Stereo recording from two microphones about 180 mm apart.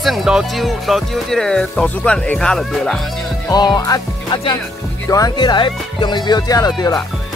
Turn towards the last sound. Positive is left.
turn(degrees=20)  # may be behind; listen again after turning